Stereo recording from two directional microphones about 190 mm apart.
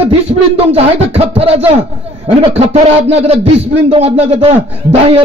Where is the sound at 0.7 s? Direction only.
30° right (ahead or behind).